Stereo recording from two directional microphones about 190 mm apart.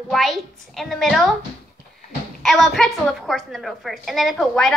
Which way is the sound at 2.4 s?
Centre (ahead or behind).